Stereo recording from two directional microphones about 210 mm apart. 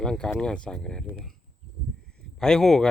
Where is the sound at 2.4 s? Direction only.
5° left (ahead or behind).